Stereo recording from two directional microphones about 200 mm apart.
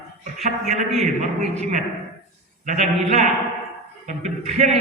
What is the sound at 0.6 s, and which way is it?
A man's voice, 35° right (ahead or behind).